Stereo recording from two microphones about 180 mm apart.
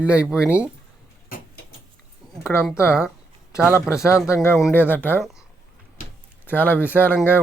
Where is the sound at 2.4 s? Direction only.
15° left (ahead or behind).